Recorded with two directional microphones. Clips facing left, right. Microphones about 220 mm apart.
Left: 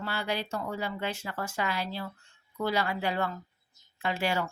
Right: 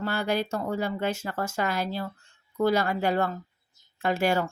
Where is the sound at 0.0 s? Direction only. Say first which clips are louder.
Right 6 dB; 45° right (ahead or behind).